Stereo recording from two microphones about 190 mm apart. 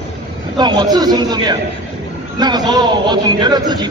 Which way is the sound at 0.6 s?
25° right (ahead or behind).